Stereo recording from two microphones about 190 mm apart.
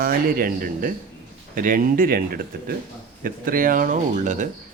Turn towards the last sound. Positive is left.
turn(degrees=-40)  # may be behind; listen again after turning